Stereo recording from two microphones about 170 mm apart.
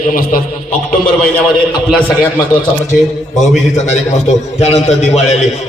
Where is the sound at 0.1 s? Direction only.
55° left (ahead or behind).